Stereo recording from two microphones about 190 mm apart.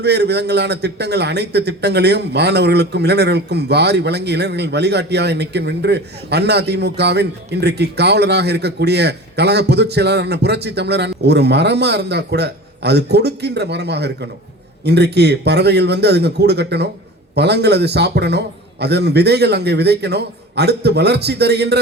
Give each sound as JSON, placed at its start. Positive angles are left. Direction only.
{"t": 0.0, "sound": "a man's voice", "side_deg": -60}